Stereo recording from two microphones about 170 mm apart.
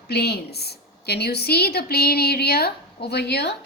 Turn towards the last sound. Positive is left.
turn(degrees=75)  # may be behind; listen again after turning